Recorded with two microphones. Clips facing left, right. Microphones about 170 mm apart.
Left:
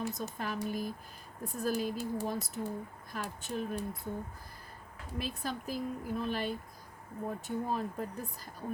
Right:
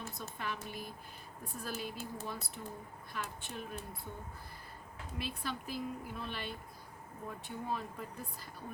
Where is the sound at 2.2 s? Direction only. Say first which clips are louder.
Left 8 dB; 45° left (ahead or behind).